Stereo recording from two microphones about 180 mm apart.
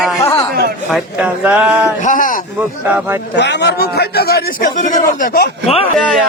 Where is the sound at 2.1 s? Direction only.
45° left (ahead or behind).